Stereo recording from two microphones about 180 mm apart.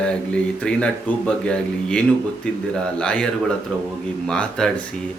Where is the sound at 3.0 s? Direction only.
5° left (ahead or behind).